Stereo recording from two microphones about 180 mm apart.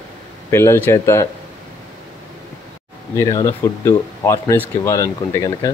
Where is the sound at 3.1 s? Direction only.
20° left (ahead or behind).